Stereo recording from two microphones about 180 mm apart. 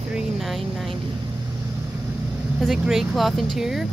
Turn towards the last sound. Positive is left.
turn(degrees=0)  # may be behind; listen again after turning